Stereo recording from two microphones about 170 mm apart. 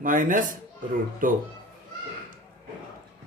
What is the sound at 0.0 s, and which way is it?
Speech, 50° right (ahead or behind).